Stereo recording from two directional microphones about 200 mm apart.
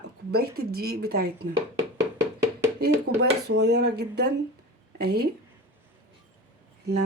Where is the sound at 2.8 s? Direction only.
55° right (ahead or behind).